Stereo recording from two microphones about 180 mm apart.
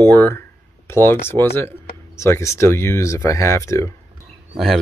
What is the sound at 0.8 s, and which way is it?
Speech, 15° left (ahead or behind).